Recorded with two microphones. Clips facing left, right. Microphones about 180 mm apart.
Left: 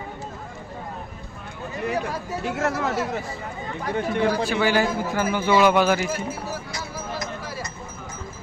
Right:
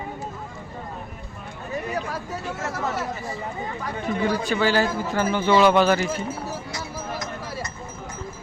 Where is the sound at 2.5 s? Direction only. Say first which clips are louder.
Left 5 dB; 80° left.